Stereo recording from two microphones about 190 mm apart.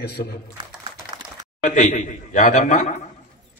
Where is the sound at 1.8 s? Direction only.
40° left (ahead or behind).